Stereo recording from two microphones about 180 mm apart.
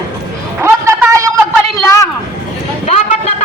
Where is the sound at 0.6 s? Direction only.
15° right (ahead or behind).